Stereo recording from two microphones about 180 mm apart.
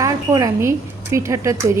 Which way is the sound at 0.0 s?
20° right (ahead or behind).